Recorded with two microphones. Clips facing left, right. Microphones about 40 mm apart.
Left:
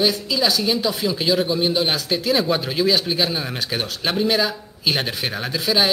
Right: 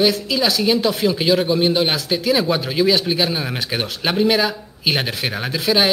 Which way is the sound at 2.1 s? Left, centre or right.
Centre.